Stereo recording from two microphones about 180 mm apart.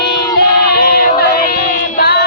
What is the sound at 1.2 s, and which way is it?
Music, 60° left (ahead or behind).